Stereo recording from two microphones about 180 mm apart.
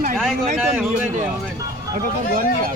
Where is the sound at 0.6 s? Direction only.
5° right (ahead or behind).